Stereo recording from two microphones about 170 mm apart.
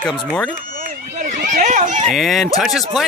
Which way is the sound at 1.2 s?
50° right (ahead or behind).